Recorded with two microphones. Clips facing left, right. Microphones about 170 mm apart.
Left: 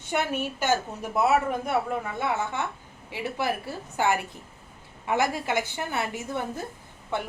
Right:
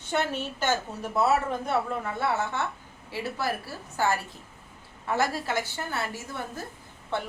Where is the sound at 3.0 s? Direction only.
15° left (ahead or behind).